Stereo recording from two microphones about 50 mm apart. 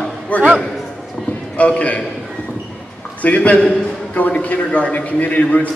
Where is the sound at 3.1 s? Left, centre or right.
Left.